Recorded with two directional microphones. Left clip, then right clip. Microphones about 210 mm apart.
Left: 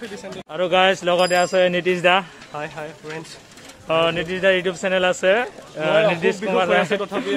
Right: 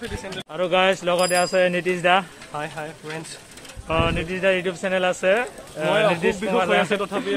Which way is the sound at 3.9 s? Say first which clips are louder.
Left 4 dB; 25° left (ahead or behind).